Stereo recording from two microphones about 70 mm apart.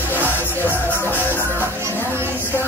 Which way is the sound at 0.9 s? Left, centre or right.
Left.